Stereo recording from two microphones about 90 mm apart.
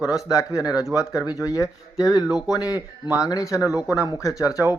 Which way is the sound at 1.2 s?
45° left (ahead or behind).